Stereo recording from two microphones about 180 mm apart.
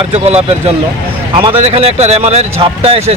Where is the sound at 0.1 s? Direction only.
35° right (ahead or behind).